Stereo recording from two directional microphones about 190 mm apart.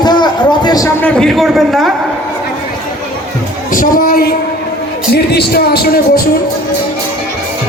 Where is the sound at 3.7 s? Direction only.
45° left (ahead or behind).